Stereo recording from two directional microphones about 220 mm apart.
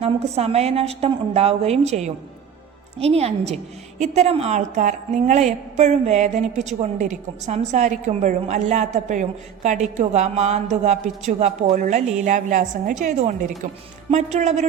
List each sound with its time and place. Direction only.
0.0 s a woman's voice: 30° right (ahead or behind)